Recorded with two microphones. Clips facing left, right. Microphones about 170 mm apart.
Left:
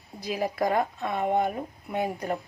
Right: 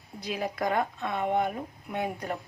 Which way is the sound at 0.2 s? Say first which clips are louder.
Left 3 dB; 5° left (ahead or behind).